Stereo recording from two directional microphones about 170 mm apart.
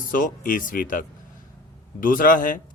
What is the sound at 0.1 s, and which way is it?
A man's voice, 55° left (ahead or behind).